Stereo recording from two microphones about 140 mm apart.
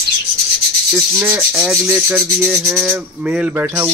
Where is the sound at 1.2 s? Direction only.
15° right (ahead or behind).